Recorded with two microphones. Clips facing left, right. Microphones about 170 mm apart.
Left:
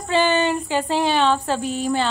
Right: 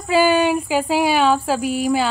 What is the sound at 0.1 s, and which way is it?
Speech, 10° right (ahead or behind).